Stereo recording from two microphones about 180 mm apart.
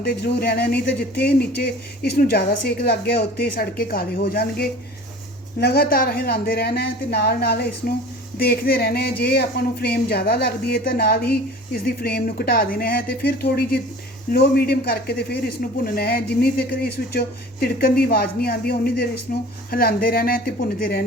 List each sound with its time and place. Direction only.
0.0 s speech: 60° left (ahead or behind)